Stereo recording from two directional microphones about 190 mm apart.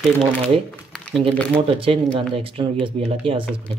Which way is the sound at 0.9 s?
5° left (ahead or behind).